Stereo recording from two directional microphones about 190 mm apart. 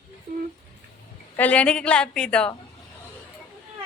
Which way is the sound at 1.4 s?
5° left (ahead or behind).